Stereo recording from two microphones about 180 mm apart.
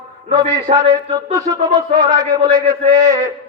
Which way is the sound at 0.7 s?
35° right (ahead or behind).